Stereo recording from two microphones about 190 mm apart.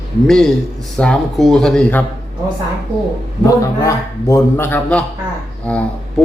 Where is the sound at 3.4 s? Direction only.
15° left (ahead or behind).